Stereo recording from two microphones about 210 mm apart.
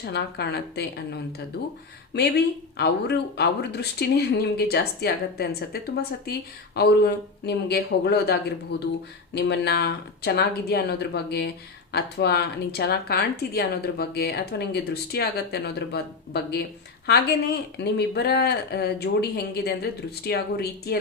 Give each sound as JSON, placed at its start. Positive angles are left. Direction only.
{"t": 0.0, "sound": "speech", "side_deg": 50}